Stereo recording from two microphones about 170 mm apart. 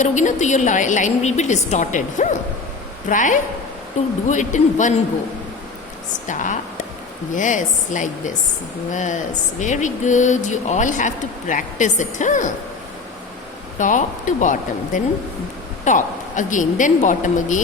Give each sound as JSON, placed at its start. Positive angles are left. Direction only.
{"t": 0.0, "sound": "speech", "side_deg": 45}
{"t": 6.2, "sound": "speech", "side_deg": 50}
{"t": 13.7, "sound": "speech", "side_deg": 50}